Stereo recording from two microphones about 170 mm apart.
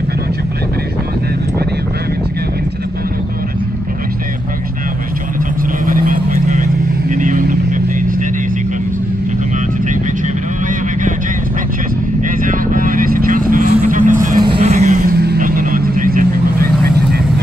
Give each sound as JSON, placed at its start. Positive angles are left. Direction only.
{"t": 5.9, "sound": "vehicle", "side_deg": -55}
{"t": 12.3, "sound": "vehicle", "side_deg": -55}
{"t": 14.4, "sound": "music", "side_deg": -35}
{"t": 15.0, "sound": "vehicle", "side_deg": -65}